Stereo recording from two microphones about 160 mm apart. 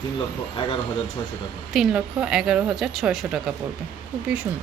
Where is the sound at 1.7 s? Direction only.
5° right (ahead or behind).